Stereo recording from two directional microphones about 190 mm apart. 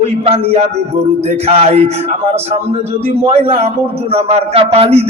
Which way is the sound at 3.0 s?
30° right (ahead or behind).